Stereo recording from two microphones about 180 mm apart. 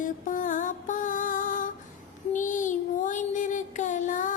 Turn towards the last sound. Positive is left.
turn(degrees=45)  # may be behind; listen again after turning